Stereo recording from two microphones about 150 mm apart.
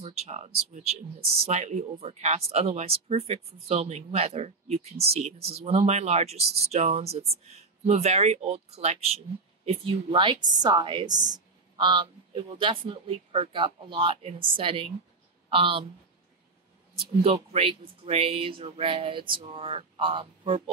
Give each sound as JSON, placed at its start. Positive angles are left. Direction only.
{"t": 0.0, "sound": "a woman's voice", "side_deg": -45}
{"t": 17.2, "sound": "a woman's voice", "side_deg": -40}